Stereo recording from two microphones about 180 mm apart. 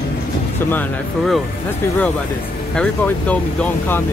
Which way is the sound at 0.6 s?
5° left (ahead or behind).